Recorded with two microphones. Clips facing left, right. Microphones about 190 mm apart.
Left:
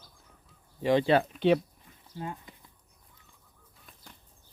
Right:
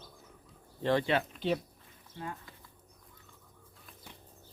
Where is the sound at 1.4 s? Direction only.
65° left (ahead or behind).